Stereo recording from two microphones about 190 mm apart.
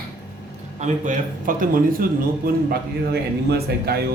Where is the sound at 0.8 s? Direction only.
45° right (ahead or behind).